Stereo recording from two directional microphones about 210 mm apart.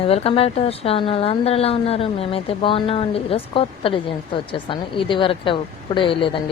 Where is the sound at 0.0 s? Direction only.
30° left (ahead or behind).